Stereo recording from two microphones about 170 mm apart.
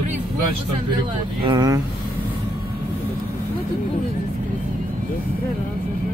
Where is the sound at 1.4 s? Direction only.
20° right (ahead or behind).